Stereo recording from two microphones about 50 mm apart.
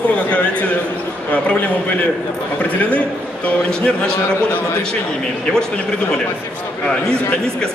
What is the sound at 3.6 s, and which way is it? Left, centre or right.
Speech, centre.